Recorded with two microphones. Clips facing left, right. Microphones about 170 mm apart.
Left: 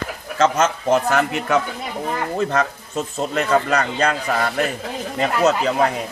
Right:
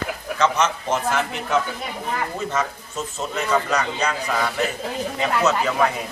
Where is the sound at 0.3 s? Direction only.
50° left (ahead or behind).